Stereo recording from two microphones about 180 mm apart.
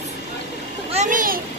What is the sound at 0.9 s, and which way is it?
Speech, 45° right (ahead or behind).